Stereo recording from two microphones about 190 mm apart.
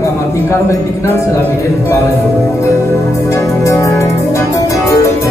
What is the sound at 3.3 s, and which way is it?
Music, 15° left (ahead or behind).